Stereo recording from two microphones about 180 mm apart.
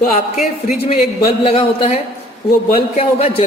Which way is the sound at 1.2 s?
30° left (ahead or behind).